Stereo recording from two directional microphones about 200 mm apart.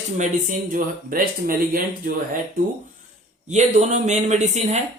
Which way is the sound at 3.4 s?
35° right (ahead or behind).